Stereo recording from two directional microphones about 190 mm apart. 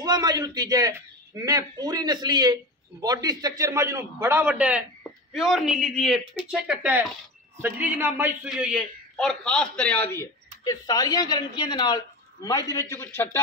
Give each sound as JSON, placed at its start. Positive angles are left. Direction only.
{"t": 0.0, "sound": "a man's voice", "side_deg": -20}
{"t": 10.6, "sound": "speech", "side_deg": 20}